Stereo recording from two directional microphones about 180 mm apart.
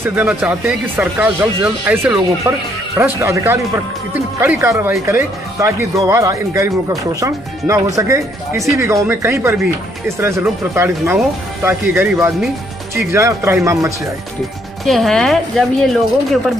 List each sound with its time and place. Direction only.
0.0 s speech: 10° right (ahead or behind)
14.9 s speech: centre (ahead or behind)